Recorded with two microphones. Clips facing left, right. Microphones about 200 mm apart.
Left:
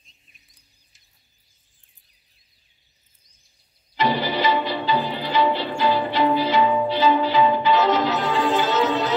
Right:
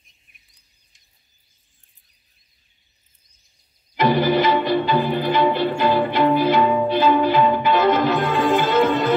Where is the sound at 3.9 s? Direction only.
55° right (ahead or behind).